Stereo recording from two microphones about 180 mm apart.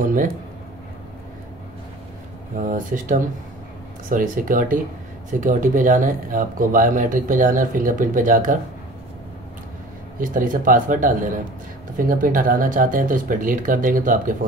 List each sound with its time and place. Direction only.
0.0 s speech: 50° right (ahead or behind)
2.5 s speech: 45° right (ahead or behind)
10.2 s speech: 50° right (ahead or behind)